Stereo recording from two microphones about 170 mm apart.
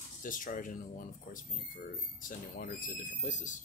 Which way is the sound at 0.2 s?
50° left (ahead or behind).